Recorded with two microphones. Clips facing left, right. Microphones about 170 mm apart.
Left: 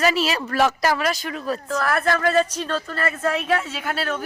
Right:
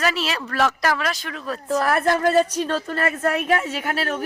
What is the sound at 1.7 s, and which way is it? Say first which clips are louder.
Speech: right 3 dB; 20° right (ahead or behind).